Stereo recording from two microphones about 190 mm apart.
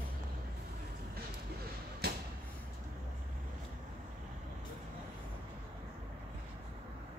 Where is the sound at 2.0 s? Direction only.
55° right (ahead or behind).